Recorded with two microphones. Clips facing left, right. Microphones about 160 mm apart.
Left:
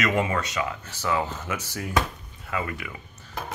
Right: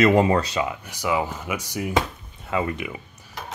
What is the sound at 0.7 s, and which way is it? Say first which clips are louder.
Speech: right 2 dB; 15° right (ahead or behind).